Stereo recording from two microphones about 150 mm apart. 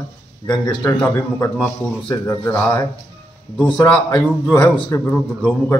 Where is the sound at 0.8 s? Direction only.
20° left (ahead or behind).